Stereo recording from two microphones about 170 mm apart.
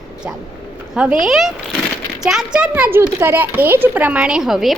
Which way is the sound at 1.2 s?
Centre (ahead or behind).